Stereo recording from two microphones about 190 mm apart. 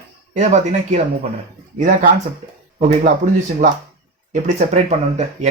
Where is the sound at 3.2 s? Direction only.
35° right (ahead or behind).